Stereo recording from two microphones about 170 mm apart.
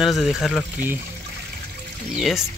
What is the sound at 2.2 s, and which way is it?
Speech, centre (ahead or behind).